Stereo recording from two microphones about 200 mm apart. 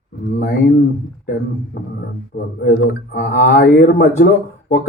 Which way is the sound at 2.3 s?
45° left (ahead or behind).